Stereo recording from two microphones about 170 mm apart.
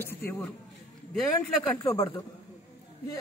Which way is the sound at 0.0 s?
10° left (ahead or behind).